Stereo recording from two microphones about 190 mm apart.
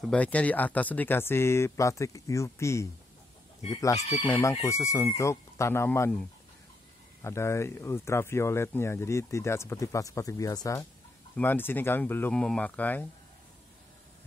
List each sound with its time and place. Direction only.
0.0 s speech: 5° left (ahead or behind)
4.3 s speech: 15° left (ahead or behind)